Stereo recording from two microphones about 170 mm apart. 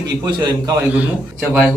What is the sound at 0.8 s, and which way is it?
Speech, 10° right (ahead or behind).